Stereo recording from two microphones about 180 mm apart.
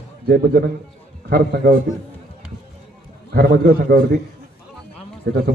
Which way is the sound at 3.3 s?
55° right (ahead or behind).